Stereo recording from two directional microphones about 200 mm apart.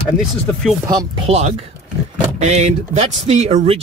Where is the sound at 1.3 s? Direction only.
35° right (ahead or behind).